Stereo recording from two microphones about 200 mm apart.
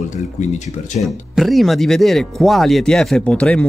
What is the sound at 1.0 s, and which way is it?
Speech, centre (ahead or behind).